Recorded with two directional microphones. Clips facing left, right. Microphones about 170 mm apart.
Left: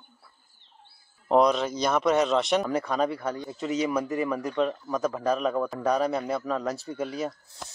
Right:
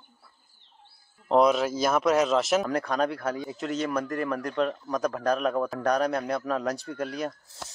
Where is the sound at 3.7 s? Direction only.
10° left (ahead or behind).